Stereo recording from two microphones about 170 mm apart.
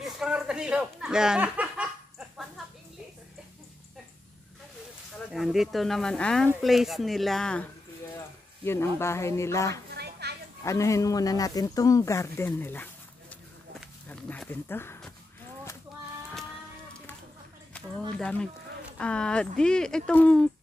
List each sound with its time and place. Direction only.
0.0 s a sound: 5° right (ahead or behind)
5.3 s speech: centre (ahead or behind)
8.6 s speech: 15° left (ahead or behind)
9.8 s children playing: 70° right (ahead or behind)
10.6 s speech: 20° left (ahead or behind)
13.7 s walk: 5° left (ahead or behind)
18.1 s speech: 5° left (ahead or behind)